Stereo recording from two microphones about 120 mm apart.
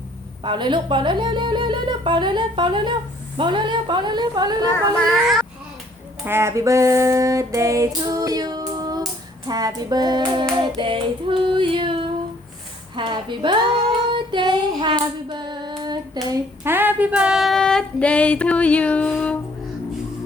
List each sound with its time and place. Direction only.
0.4 s speech: 40° right (ahead or behind)
4.9 s speech: centre (ahead or behind)
6.2 s female singing: 20° right (ahead or behind)
9.5 s speech: 35° right (ahead or behind)
10.6 s child singing: 45° right (ahead or behind)
13.0 s speech: 40° right (ahead or behind)
14.1 s female singing: 40° right (ahead or behind)
16.2 s speech: 35° right (ahead or behind)
16.6 s female singing: 15° right (ahead or behind); by 19.4 s 10° left (ahead or behind)